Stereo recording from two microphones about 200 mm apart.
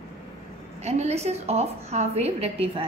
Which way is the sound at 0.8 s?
30° right (ahead or behind).